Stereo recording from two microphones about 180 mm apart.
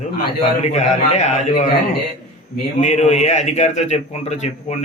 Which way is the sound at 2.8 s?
40° left (ahead or behind).